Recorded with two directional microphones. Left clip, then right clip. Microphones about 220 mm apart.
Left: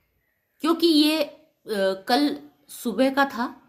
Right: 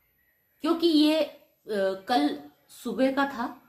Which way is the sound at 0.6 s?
55° left (ahead or behind).